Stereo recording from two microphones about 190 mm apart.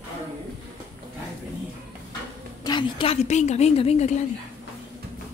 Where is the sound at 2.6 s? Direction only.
25° left (ahead or behind).